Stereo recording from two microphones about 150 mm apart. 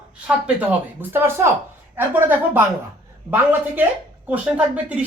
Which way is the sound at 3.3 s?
10° right (ahead or behind).